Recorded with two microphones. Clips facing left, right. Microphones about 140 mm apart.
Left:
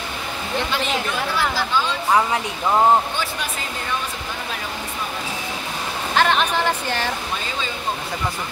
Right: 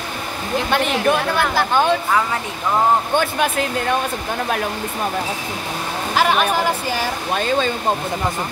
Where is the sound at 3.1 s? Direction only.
55° right (ahead or behind).